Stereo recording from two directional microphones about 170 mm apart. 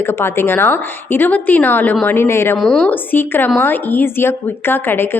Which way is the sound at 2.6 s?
5° left (ahead or behind).